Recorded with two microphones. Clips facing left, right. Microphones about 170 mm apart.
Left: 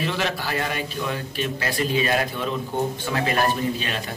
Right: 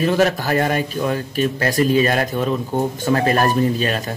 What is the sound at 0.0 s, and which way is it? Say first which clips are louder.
Speech: right 9 dB; 45° right (ahead or behind).